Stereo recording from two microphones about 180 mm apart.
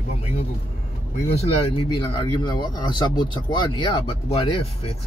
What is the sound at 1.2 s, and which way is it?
Speech, 35° left (ahead or behind).